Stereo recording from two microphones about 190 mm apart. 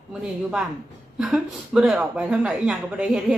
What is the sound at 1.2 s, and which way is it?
Speech, 5° right (ahead or behind).